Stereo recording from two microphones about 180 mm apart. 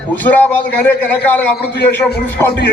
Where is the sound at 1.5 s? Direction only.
65° left (ahead or behind).